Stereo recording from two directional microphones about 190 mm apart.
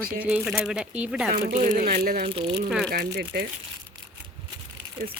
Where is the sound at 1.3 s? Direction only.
40° right (ahead or behind).